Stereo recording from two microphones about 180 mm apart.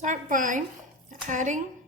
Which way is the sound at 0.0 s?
45° right (ahead or behind).